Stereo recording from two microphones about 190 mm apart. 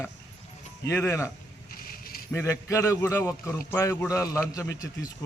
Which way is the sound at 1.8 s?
50° left (ahead or behind).